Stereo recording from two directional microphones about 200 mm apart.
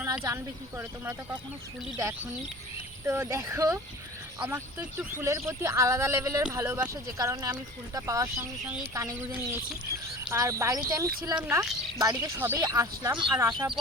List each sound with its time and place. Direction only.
0.0 s a sound: 15° right (ahead or behind)
0.8 s speech: 10° right (ahead or behind)
3.1 s speech: 15° right (ahead or behind)
11.3 s speech: 5° right (ahead or behind)